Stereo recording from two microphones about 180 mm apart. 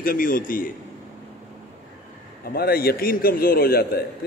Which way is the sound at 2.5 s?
55° left (ahead or behind).